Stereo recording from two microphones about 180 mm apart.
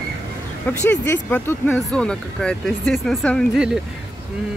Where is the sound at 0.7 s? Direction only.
10° left (ahead or behind).